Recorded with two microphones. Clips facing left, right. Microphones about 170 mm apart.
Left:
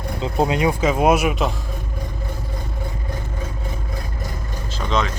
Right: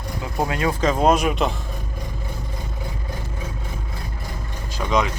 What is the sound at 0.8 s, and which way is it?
Speech, 10° left (ahead or behind).